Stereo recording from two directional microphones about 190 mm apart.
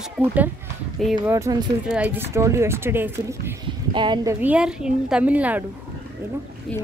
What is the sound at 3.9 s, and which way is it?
Speech, 25° right (ahead or behind).